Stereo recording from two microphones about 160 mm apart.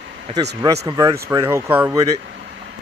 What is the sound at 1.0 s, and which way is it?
Speech, 20° right (ahead or behind).